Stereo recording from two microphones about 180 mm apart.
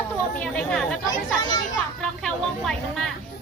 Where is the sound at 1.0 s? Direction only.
25° left (ahead or behind).